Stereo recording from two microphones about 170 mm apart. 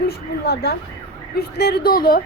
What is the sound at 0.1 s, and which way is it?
A woman's voice, 70° left (ahead or behind).